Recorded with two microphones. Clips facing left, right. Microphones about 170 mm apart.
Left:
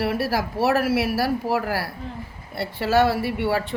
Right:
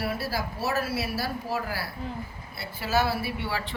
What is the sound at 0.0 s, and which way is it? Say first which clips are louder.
A woman's voice: left 7 dB; 90° left.